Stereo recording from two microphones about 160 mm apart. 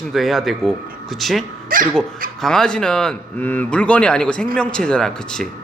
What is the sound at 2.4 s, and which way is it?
A man's voice, 5° left (ahead or behind).